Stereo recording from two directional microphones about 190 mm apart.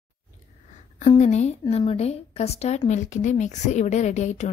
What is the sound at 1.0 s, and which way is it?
A woman's voice, 35° left (ahead or behind).